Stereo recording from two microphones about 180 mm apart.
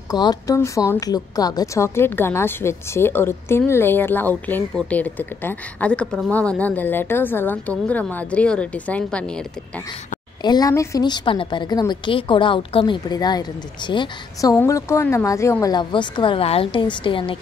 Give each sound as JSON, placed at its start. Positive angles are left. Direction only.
{"t": 0.1, "sound": "a woman's voice", "side_deg": 20}
{"t": 10.4, "sound": "a woman's voice", "side_deg": 20}